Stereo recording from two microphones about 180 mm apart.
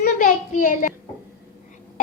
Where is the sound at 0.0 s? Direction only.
50° left (ahead or behind).